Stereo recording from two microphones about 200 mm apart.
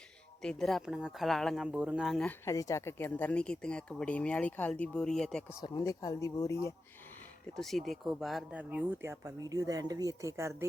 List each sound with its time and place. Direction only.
0.4 s speech: centre (ahead or behind)
5.6 s speech: 15° left (ahead or behind)
7.5 s speech: centre (ahead or behind)